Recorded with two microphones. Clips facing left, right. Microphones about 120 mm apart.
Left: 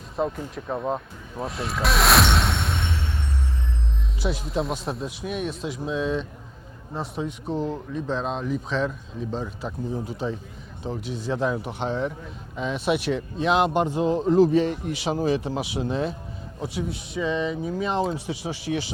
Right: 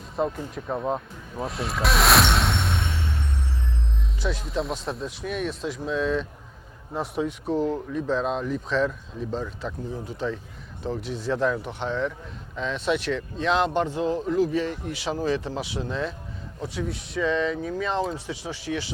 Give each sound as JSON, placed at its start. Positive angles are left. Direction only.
{"t": 0.2, "sound": "vehicle", "side_deg": 0}
{"t": 4.2, "sound": "speech", "side_deg": 10}
{"t": 18.3, "sound": "speech", "side_deg": 15}